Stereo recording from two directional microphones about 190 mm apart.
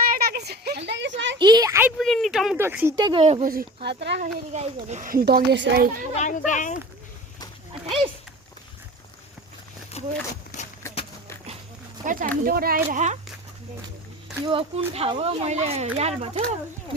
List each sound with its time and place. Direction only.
0.1 s a sound: 55° right (ahead or behind)
0.9 s a sound: 65° right (ahead or behind)
1.4 s speech: 20° right (ahead or behind)
2.0 s speech: centre (ahead or behind)
2.9 s speech: 25° right (ahead or behind)
3.4 s speech: 50° right (ahead or behind)
4.2 s a child's voice: 35° right (ahead or behind)
6.1 s speech: 40° left (ahead or behind)
7.7 s speech: 30° right (ahead or behind)
9.9 s a sound: 35° left (ahead or behind)
12.0 s a child's voice: 40° right (ahead or behind)
12.9 s speech: 40° right (ahead or behind)
14.4 s speech: 30° right (ahead or behind)